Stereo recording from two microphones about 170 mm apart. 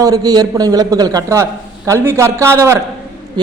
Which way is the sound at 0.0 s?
20° right (ahead or behind).